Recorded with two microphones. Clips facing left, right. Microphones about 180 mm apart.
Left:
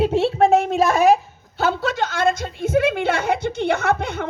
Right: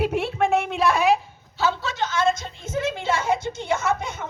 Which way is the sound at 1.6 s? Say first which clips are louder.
Left 4 dB; 55° left (ahead or behind).